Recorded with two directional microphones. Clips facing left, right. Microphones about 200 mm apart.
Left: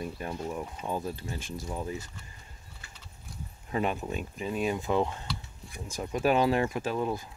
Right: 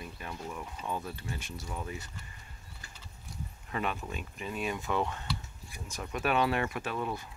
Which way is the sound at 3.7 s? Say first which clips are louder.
Left 5 dB; 35° left (ahead or behind).